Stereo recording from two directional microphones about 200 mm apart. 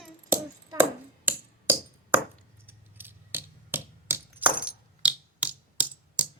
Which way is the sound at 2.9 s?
10° right (ahead or behind).